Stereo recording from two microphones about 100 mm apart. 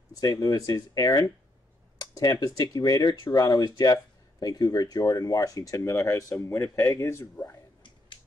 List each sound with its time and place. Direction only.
0.1 s speech: 35° left (ahead or behind)